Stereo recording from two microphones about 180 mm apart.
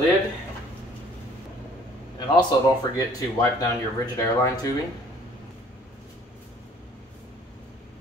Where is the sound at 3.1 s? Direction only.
20° left (ahead or behind).